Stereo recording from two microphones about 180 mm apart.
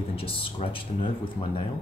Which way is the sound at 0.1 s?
30° left (ahead or behind).